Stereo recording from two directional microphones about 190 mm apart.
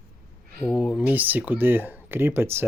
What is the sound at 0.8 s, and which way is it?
Speech, 5° right (ahead or behind).